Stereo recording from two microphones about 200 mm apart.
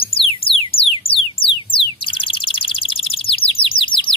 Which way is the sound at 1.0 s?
30° left (ahead or behind).